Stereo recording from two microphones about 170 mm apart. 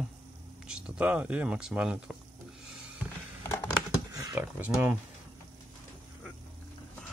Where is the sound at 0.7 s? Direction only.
5° right (ahead or behind).